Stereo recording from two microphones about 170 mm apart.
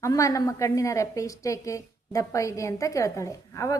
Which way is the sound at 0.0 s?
20° left (ahead or behind).